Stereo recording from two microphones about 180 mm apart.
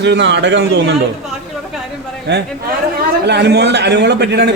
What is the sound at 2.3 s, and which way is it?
A man's voice, 65° right (ahead or behind).